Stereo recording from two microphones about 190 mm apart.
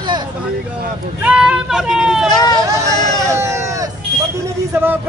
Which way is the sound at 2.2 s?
20° left (ahead or behind).